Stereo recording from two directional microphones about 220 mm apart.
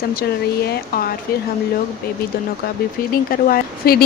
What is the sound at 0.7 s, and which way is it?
Speech, 45° left (ahead or behind).